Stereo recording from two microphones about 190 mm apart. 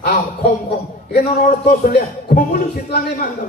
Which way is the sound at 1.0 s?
55° left (ahead or behind).